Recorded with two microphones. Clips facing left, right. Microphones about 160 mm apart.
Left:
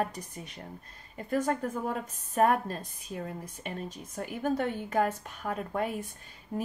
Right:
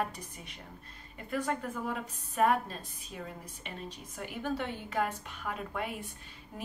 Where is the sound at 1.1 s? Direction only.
40° left (ahead or behind).